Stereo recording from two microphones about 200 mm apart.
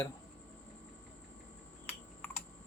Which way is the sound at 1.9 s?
10° left (ahead or behind).